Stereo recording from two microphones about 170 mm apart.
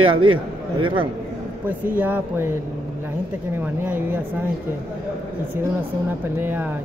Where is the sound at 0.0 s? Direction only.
30° right (ahead or behind).